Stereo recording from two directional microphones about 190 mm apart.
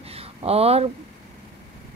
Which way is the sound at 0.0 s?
30° right (ahead or behind).